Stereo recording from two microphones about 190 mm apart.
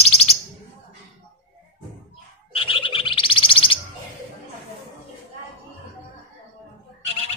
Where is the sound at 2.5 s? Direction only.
30° left (ahead or behind).